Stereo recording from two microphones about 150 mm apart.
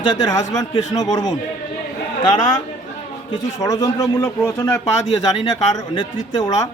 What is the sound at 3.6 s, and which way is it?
A man's voice, 25° left (ahead or behind).